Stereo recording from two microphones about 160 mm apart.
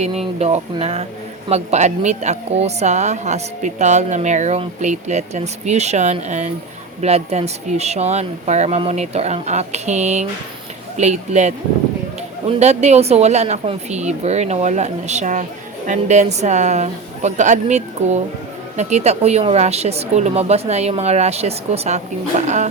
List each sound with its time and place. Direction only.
0.0 s a woman's voice: 40° right (ahead or behind)